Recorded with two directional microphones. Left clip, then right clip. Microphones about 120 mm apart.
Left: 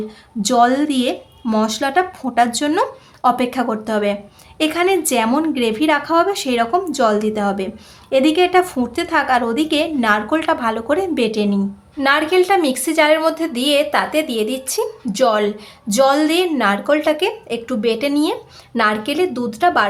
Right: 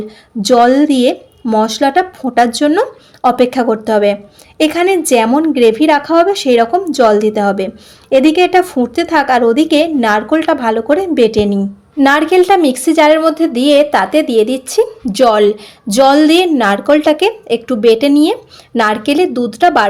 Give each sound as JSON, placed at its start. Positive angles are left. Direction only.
{"t": 0.4, "sound": "a woman's voice", "side_deg": -30}
{"t": 12.0, "sound": "a woman's voice", "side_deg": -45}